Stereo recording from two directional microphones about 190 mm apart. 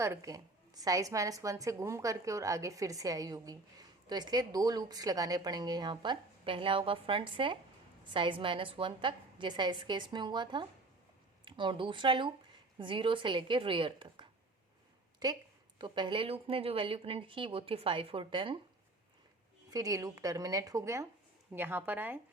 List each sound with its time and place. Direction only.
0.0 s a woman's voice: 15° right (ahead or behind)
19.7 s speech: 20° right (ahead or behind)